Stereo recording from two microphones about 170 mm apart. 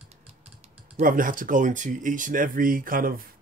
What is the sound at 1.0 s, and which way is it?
Speech, 55° right (ahead or behind).